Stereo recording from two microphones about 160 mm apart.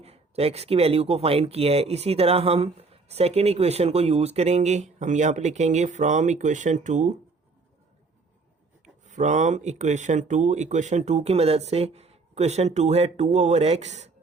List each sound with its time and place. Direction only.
0.0 s speech: 40° right (ahead or behind)
9.0 s speech: 50° right (ahead or behind)